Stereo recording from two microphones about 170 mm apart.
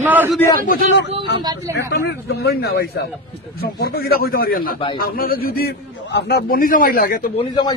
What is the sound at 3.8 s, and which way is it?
A man's voice, 65° left (ahead or behind).